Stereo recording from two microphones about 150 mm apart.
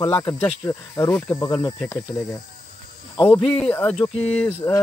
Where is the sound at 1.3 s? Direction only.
30° left (ahead or behind).